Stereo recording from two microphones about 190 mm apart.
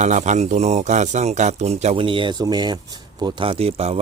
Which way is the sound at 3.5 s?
35° right (ahead or behind).